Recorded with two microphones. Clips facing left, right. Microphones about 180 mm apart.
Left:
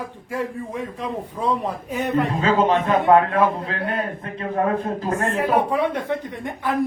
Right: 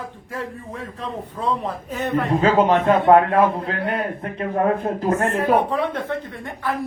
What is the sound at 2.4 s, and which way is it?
A man's voice, 35° right (ahead or behind).